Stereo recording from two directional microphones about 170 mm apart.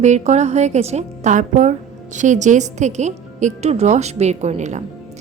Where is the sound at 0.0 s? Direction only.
40° right (ahead or behind).